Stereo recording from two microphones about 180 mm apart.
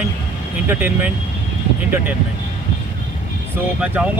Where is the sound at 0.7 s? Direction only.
10° right (ahead or behind).